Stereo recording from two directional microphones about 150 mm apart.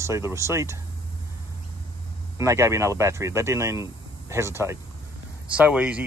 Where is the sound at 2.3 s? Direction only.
20° right (ahead or behind).